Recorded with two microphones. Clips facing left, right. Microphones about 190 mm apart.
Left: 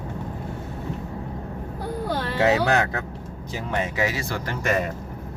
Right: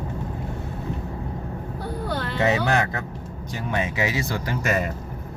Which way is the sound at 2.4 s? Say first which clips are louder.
Left 2 dB; 5° left (ahead or behind).